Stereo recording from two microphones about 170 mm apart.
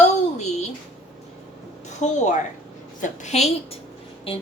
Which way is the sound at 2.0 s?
45° left (ahead or behind).